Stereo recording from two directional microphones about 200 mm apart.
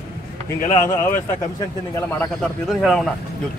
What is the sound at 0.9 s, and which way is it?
Speech, 10° left (ahead or behind).